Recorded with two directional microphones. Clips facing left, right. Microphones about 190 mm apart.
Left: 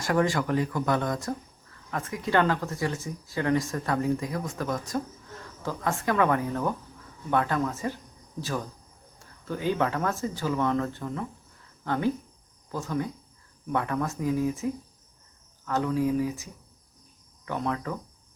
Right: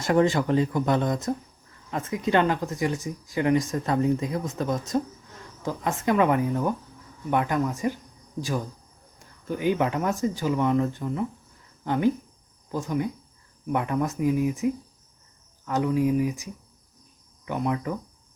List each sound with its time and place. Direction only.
0.0 s speech: 25° right (ahead or behind)